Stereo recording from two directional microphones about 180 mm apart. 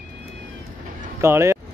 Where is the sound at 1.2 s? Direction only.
15° right (ahead or behind).